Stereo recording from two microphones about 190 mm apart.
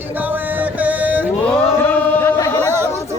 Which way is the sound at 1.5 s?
10° left (ahead or behind).